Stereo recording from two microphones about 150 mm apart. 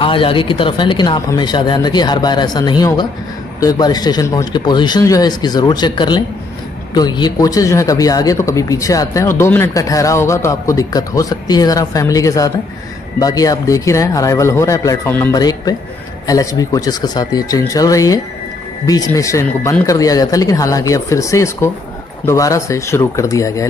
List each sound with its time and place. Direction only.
0.0 s speech: 35° left (ahead or behind); by 15.3 s 15° left (ahead or behind)
15.3 s speech: 25° left (ahead or behind)